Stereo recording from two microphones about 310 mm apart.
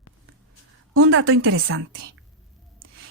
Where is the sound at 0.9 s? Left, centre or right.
Right.